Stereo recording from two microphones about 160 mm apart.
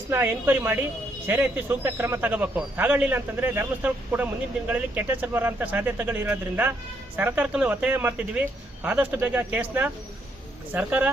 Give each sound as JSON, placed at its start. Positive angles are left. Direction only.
{"t": 0.1, "sound": "speech", "side_deg": -15}